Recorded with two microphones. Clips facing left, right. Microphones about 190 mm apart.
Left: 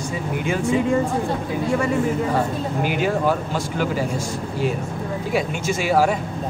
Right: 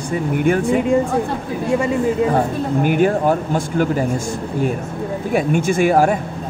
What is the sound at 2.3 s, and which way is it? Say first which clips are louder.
Speech: right 4 dB; 50° right (ahead or behind).